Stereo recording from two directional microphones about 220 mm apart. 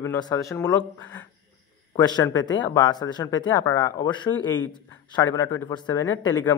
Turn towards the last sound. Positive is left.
turn(degrees=15)  # may be behind; listen again after turning